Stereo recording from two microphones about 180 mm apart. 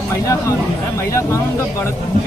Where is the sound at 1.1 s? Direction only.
15° left (ahead or behind).